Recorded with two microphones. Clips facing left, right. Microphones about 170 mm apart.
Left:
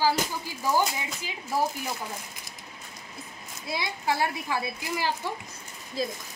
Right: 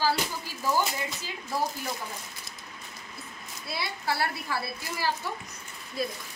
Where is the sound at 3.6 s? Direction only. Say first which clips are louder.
Left 3 dB; 20° left (ahead or behind).